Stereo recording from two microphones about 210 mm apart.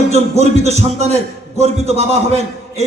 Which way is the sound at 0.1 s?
30° right (ahead or behind).